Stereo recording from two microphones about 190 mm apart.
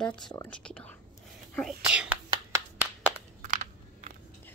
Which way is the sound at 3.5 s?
40° right (ahead or behind).